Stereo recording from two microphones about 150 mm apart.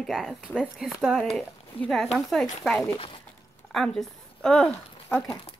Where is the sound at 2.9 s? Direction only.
40° left (ahead or behind).